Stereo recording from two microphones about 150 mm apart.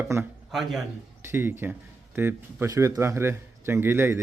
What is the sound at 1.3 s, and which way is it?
A man's voice, 15° right (ahead or behind).